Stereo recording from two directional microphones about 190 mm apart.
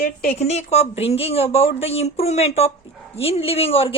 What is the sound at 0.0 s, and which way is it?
Speech, 55° left (ahead or behind).